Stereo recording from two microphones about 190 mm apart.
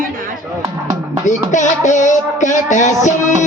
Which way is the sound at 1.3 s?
40° left (ahead or behind).